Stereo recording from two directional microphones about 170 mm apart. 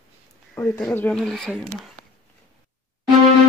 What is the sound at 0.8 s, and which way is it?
Speech, 10° left (ahead or behind).